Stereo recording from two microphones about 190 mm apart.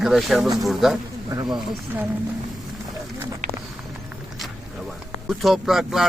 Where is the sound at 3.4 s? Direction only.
40° right (ahead or behind).